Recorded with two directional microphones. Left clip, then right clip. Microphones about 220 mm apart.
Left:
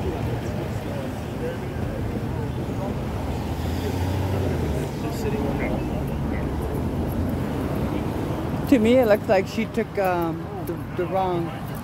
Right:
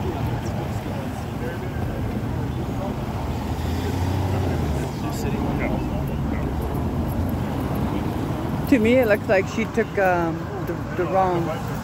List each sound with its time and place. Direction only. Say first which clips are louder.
8.6 s speech: even; 20° left (ahead or behind)